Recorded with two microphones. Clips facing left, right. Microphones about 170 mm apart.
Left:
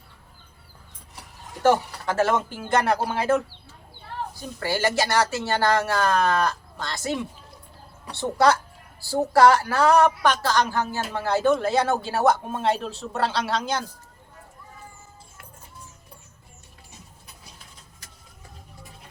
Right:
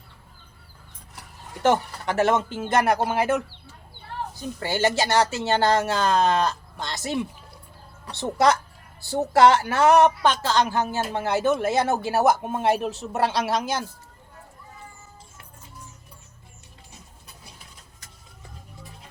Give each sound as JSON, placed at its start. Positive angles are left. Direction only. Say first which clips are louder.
{"t": 1.6, "sound": "a woman's voice", "louder": "left 1 dB", "side_deg": -20}
{"t": 4.6, "sound": "a woman's voice", "louder": "even", "side_deg": -20}